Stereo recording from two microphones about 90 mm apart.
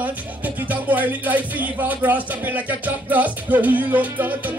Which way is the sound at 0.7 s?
20° right (ahead or behind).